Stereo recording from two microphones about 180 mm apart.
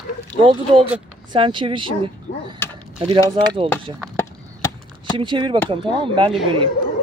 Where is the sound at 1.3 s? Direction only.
25° right (ahead or behind).